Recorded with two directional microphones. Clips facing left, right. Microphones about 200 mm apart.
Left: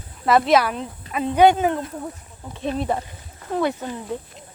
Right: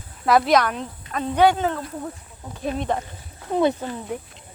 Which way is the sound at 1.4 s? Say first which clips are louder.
Left 3 dB; 20° left (ahead or behind).